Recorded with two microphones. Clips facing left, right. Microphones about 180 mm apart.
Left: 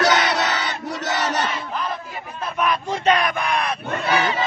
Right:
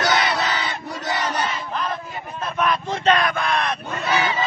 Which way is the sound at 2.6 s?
10° left (ahead or behind).